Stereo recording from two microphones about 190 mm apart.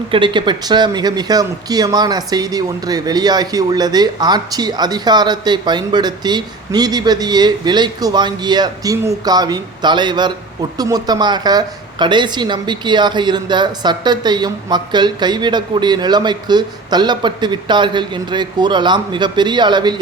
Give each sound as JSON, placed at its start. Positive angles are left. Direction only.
{"t": 0.1, "sound": "speech", "side_deg": -25}